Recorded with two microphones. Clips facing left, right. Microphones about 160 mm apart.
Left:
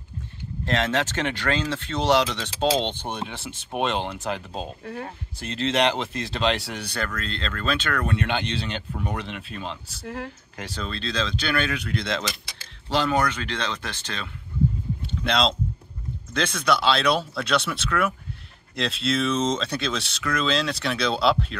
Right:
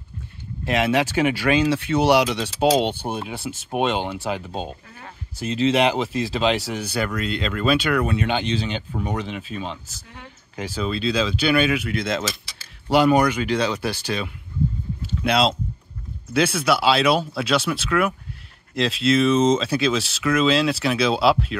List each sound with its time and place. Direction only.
0.7 s speech: 10° right (ahead or behind)
10.0 s speech: 70° left (ahead or behind)
10.5 s speech: 5° right (ahead or behind)
15.0 s a sound: 5° right (ahead or behind)
16.3 s speech: 5° right (ahead or behind)